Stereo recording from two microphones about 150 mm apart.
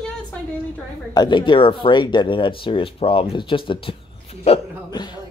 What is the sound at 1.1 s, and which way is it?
Speech, 30° left (ahead or behind).